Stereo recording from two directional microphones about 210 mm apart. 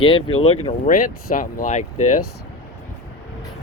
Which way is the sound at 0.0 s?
25° left (ahead or behind).